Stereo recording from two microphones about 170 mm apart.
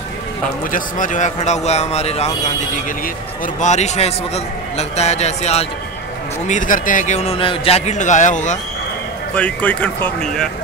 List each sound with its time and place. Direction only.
0.7 s a man's voice: 50° left (ahead or behind)
3.6 s a man's voice: 40° left (ahead or behind)
9.3 s speech: 10° left (ahead or behind)